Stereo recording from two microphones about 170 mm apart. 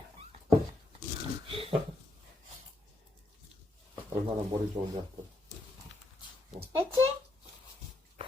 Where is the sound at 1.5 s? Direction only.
35° right (ahead or behind).